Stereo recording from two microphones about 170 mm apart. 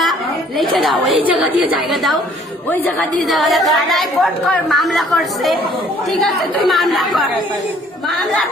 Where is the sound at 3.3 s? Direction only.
Centre (ahead or behind).